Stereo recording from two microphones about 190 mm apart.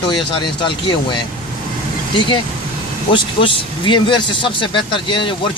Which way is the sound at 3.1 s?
25° left (ahead or behind).